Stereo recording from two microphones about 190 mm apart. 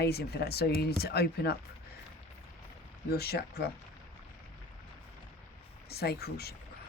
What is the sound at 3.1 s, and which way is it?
Speech, 55° left (ahead or behind).